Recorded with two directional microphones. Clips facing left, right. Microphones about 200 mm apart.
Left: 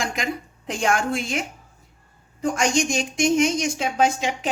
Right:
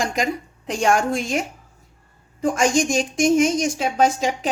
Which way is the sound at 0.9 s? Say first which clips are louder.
Right 3 dB; 40° right (ahead or behind).